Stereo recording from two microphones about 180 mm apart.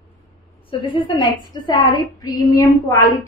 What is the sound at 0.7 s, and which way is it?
A woman's voice, 25° left (ahead or behind).